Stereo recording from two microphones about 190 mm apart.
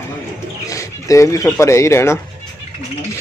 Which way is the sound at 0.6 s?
15° left (ahead or behind).